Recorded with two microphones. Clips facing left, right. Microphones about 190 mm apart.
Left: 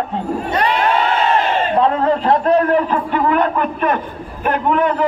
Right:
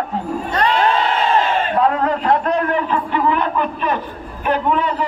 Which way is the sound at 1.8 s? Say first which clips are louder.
Left 2 dB; 30° left (ahead or behind).